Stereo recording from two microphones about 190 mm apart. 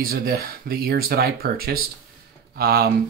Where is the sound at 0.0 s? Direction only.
50° right (ahead or behind).